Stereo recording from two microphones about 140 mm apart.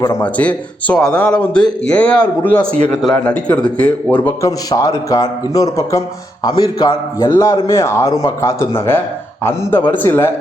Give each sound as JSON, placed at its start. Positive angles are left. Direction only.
{"t": 0.2, "sound": "a man's voice", "side_deg": 10}
{"t": 4.7, "sound": "a man's voice", "side_deg": 25}